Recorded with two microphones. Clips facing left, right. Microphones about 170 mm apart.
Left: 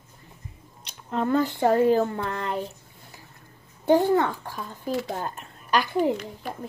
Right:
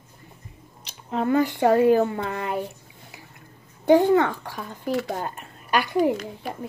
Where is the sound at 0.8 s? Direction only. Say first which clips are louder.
Right 1 dB; 5° right (ahead or behind).